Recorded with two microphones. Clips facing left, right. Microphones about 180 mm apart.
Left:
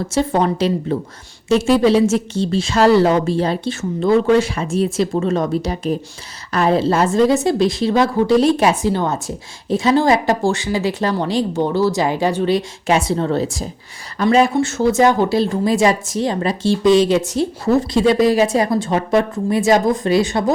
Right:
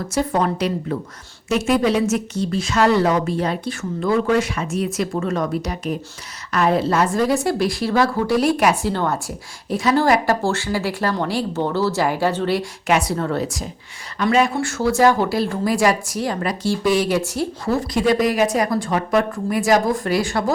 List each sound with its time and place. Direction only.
0.1 s speech: 25° left (ahead or behind)